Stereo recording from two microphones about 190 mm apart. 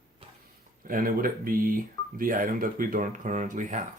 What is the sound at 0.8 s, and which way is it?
Speech, 50° right (ahead or behind).